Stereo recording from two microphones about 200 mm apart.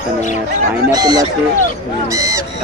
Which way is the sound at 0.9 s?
20° right (ahead or behind).